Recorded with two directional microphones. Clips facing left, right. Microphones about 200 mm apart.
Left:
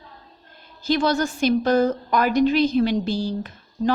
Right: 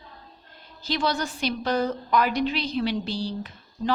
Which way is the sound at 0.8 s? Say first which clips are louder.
Left 6 dB; 50° left (ahead or behind).